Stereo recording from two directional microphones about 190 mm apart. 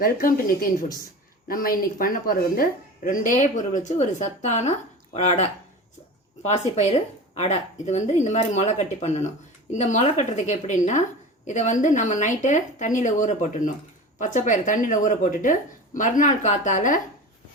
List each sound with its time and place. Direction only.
0.0 s a woman's voice: 50° left (ahead or behind)